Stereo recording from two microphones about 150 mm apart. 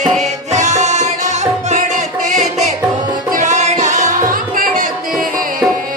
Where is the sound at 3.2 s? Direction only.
60° right (ahead or behind).